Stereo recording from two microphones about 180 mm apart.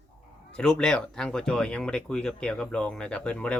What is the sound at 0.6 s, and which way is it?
Speech, 5° left (ahead or behind).